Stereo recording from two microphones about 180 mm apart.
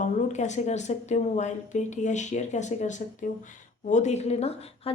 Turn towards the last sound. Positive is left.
turn(degrees=35)  # may be behind; listen again after turning